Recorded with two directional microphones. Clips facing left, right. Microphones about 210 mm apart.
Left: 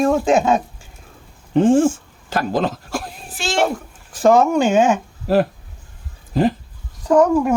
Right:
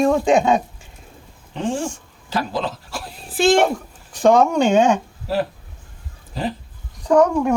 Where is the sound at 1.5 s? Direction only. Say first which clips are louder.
Left 11 dB; 50° left (ahead or behind).